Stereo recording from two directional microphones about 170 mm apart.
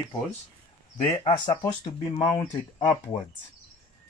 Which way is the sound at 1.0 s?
35° left (ahead or behind).